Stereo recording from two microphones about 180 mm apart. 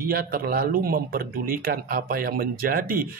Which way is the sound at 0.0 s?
55° right (ahead or behind).